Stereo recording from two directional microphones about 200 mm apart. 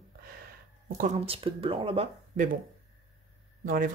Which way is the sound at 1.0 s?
35° right (ahead or behind).